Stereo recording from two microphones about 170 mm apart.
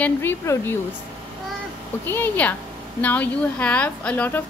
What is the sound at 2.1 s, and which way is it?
A woman's voice, 10° left (ahead or behind).